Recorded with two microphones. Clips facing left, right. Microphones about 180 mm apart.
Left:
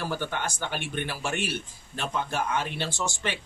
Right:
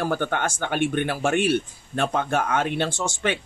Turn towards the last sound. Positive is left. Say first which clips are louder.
# right 6 dB
turn(degrees=-55)  # may be behind; listen again after turning